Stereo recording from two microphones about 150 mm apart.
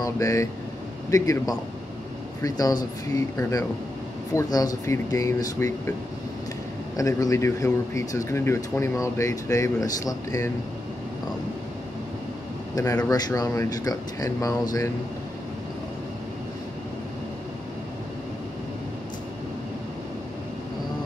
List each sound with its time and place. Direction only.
0.0 s speech: 20° left (ahead or behind)
7.0 s speech: 20° left (ahead or behind)
13.1 s speech: 25° left (ahead or behind)